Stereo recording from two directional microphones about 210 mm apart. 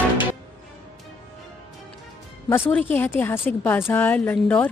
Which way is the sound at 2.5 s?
10° left (ahead or behind).